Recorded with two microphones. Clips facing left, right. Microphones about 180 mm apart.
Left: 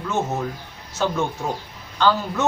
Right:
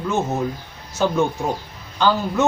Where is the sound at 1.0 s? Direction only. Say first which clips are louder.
Right 4 dB; 15° right (ahead or behind).